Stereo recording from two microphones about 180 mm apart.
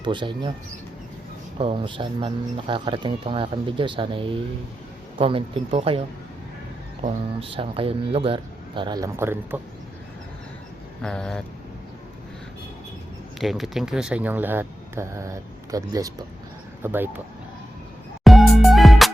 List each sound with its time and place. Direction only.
0.0 s speech: 25° right (ahead or behind)
1.5 s speech: 30° right (ahead or behind)
7.3 s speech: 30° right (ahead or behind)
9.1 s speech: 15° right (ahead or behind)
11.0 s speech: 5° left (ahead or behind)
13.4 s speech: centre (ahead or behind)
18.2 s music: centre (ahead or behind)